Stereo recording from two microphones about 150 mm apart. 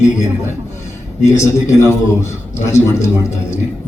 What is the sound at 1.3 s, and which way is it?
Speech, 20° left (ahead or behind).